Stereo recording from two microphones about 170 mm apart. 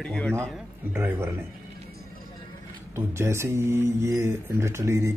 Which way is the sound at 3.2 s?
15° right (ahead or behind).